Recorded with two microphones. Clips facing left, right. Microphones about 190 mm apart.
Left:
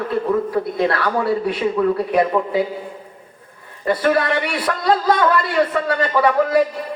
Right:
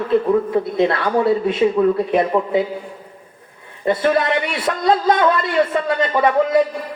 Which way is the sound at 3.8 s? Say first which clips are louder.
Right 1 dB; 25° right (ahead or behind).